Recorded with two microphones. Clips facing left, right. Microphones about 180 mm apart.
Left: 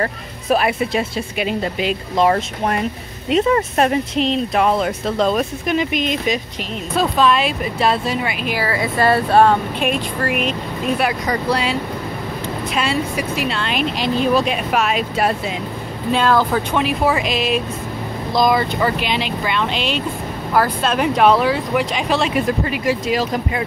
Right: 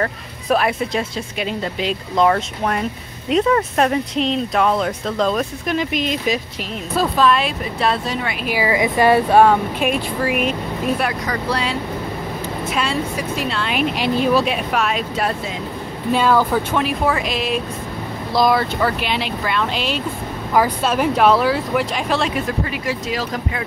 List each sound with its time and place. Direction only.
0.0 s speech: 5° left (ahead or behind)
3.3 s speech: 5° left (ahead or behind)
8.5 s speech: 15° right (ahead or behind)
11.2 s speech: 15° left (ahead or behind)
12.7 s speech: 5° left (ahead or behind)
13.6 s speech: 5° right (ahead or behind)
14.7 s speech: 10° left (ahead or behind)
16.1 s speech: 10° right (ahead or behind)
16.7 s speech: 5° left (ahead or behind)
22.8 s speech: 15° left (ahead or behind)